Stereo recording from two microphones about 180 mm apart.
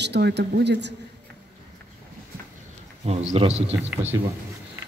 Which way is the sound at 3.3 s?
35° right (ahead or behind).